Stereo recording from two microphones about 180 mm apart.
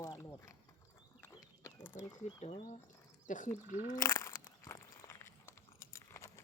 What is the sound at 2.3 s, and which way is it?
Speech, 35° left (ahead or behind).